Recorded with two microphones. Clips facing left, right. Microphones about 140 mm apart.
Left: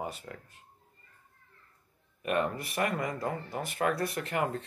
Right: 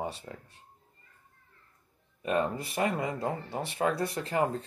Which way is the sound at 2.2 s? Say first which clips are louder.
Right 1 dB; 30° right (ahead or behind).